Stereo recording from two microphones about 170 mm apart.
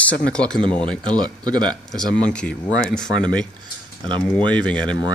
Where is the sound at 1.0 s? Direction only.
25° right (ahead or behind).